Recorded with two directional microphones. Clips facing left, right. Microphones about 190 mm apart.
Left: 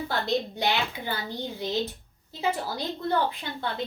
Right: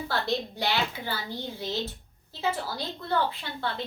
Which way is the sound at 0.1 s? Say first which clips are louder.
Left 1 dB; 20° left (ahead or behind).